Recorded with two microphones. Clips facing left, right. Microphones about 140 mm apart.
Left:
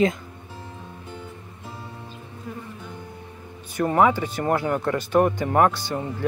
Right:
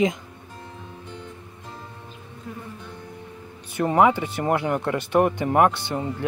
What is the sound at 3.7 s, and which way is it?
Speech, 20° right (ahead or behind).